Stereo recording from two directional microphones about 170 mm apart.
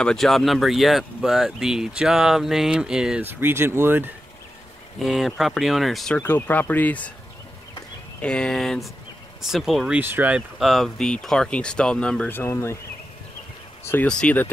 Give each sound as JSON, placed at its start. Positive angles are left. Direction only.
{"t": 0.0, "sound": "speech", "side_deg": 0}
{"t": 4.9, "sound": "speech", "side_deg": 0}
{"t": 7.7, "sound": "a sound", "side_deg": 5}
{"t": 9.5, "sound": "speech", "side_deg": 0}
{"t": 13.8, "sound": "speech", "side_deg": 10}